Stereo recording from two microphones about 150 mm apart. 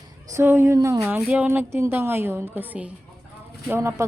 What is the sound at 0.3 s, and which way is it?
Speech, 15° right (ahead or behind).